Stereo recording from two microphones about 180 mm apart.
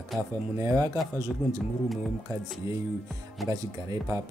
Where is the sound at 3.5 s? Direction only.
20° right (ahead or behind).